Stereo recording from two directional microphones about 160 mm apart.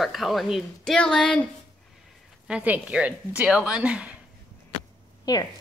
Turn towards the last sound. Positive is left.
turn(degrees=25)  # may be behind; listen again after turning